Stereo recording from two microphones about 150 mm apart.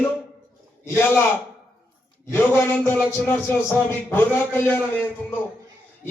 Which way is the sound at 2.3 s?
15° left (ahead or behind).